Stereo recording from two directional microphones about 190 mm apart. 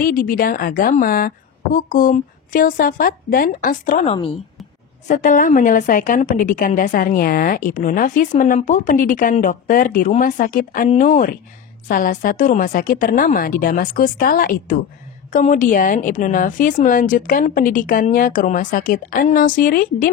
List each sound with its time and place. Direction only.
0.0 s a woman's voice: 50° left (ahead or behind)